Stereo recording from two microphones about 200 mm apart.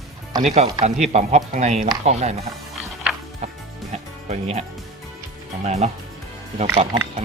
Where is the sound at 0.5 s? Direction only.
35° right (ahead or behind).